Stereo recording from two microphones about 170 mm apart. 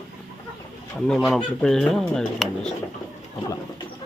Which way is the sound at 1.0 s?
Centre (ahead or behind).